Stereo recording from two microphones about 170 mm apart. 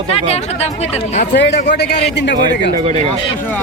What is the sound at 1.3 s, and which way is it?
Speech, 90° left.